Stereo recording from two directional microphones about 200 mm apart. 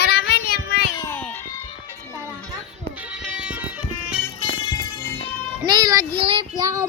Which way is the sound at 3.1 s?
5° right (ahead or behind).